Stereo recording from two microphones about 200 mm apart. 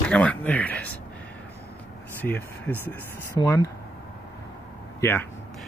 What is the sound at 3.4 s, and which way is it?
Speech, 20° left (ahead or behind).